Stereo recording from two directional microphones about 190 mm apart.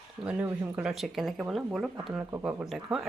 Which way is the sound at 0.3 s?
10° right (ahead or behind).